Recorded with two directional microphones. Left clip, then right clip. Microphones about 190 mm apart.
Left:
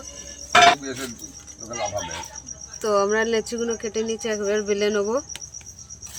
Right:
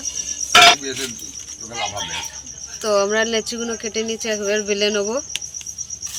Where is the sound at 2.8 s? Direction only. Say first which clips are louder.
Right 3 dB; 15° left (ahead or behind).